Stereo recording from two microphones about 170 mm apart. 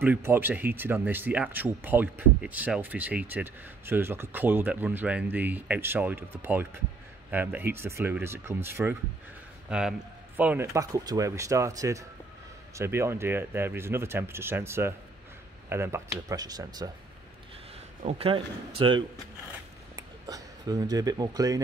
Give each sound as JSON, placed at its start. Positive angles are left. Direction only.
{"t": 0.0, "sound": "speech", "side_deg": -10}
{"t": 18.0, "sound": "a man's voice", "side_deg": -35}